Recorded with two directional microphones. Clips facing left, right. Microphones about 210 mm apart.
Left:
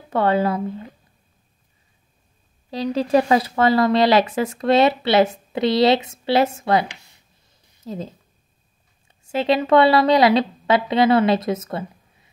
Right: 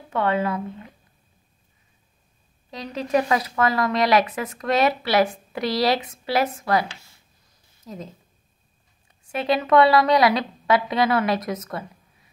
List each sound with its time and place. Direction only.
0.1 s speech: 35° left (ahead or behind)
2.7 s speech: 30° left (ahead or behind)